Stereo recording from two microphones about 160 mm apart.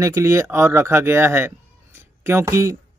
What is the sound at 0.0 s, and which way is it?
Speech, 20° right (ahead or behind).